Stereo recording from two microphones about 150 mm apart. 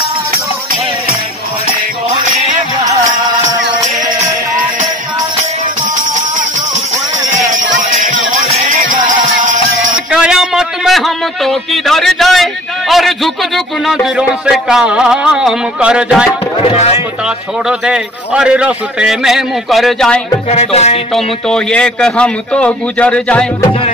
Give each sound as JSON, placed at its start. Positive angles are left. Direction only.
{"t": 10.1, "sound": "a man's voice", "side_deg": -5}
{"t": 16.5, "sound": "music", "side_deg": 45}
{"t": 17.6, "sound": "a man's voice", "side_deg": -5}
{"t": 20.4, "sound": "music", "side_deg": 45}
{"t": 21.1, "sound": "a man's voice", "side_deg": 5}